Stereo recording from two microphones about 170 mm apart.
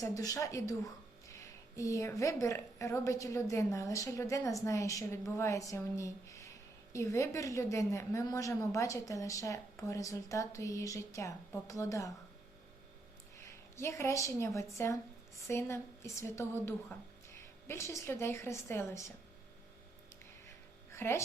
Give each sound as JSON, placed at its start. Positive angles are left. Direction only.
{"t": 0.0, "sound": "a woman's voice", "side_deg": 20}
{"t": 13.4, "sound": "a woman's voice", "side_deg": 15}
{"t": 20.9, "sound": "speech", "side_deg": 15}